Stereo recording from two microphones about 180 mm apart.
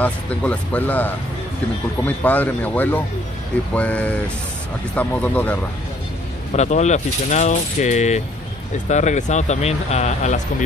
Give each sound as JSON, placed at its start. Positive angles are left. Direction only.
{"t": 0.0, "sound": "speech", "side_deg": 10}
{"t": 6.5, "sound": "speech", "side_deg": 40}